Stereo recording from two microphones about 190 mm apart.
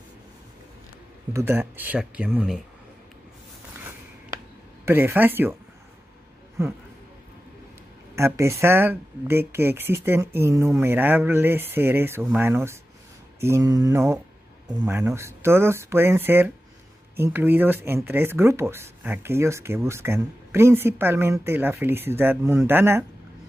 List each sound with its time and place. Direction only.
1.3 s speech: 15° right (ahead or behind)
4.8 s speech: 10° right (ahead or behind)
6.6 s speech: 15° right (ahead or behind)
8.2 s speech: 15° right (ahead or behind)